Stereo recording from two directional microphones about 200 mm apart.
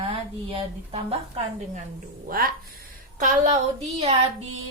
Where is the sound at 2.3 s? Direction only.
45° right (ahead or behind).